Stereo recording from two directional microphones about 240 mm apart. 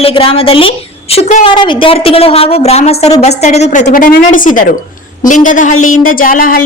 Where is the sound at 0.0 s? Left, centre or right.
Left.